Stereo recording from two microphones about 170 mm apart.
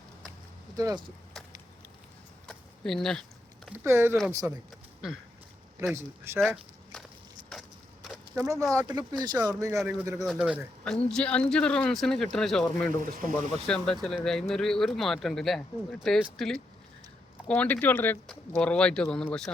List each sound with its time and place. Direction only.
0.8 s speech: 20° right (ahead or behind)
2.5 s a sound: centre (ahead or behind)
3.8 s speech: 15° right (ahead or behind)
5.9 s speech: 15° right (ahead or behind)
6.4 s walk: centre (ahead or behind)
8.4 s speech: 20° right (ahead or behind)
10.8 s speech: 5° left (ahead or behind)
13.0 s speech: 55° right (ahead or behind)
13.7 s speech: 5° left (ahead or behind)